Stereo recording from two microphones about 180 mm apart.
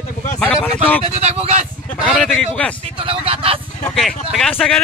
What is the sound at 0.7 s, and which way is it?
Speech, 10° left (ahead or behind).